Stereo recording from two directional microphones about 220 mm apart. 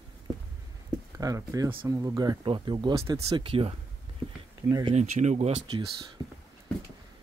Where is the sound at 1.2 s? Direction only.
15° right (ahead or behind).